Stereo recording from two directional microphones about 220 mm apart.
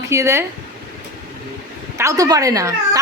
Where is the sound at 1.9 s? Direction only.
15° right (ahead or behind).